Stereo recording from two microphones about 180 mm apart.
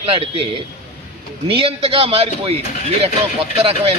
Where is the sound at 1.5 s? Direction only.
30° right (ahead or behind).